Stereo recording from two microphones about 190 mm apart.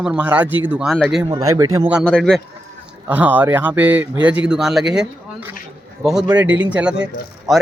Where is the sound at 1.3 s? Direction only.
20° right (ahead or behind).